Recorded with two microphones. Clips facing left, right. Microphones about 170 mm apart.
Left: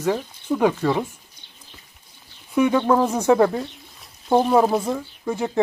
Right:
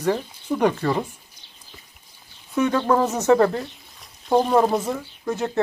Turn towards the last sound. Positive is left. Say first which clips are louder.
# left 1 dB
turn(degrees=10)  # may be behind; listen again after turning